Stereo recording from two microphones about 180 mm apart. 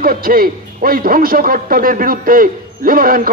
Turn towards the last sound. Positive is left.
turn(degrees=-50)  # may be behind; listen again after turning